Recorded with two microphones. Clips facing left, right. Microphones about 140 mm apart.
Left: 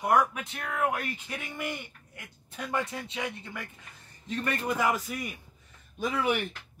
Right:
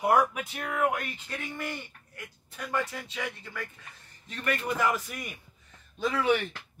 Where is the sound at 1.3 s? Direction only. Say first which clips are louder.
Even; 15° left (ahead or behind).